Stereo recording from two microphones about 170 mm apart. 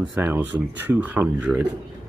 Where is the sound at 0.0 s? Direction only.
10° right (ahead or behind).